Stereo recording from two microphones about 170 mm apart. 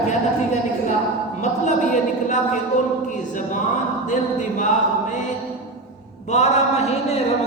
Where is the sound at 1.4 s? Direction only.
45° left (ahead or behind).